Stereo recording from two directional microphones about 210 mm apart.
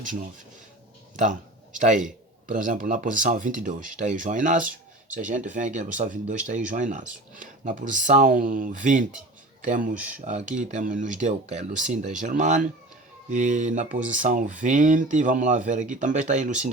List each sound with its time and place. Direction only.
0.0 s speech: 40° right (ahead or behind)